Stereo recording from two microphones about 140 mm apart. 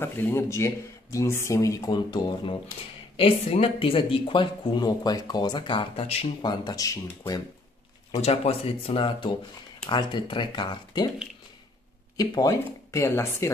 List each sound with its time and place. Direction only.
0.0 s speech: 15° left (ahead or behind); by 6.2 s 45° left (ahead or behind)
6.4 s speech: 30° left (ahead or behind)
8.2 s speech: 45° left (ahead or behind); by 11.1 s 30° left (ahead or behind)
12.2 s speech: 25° left (ahead or behind)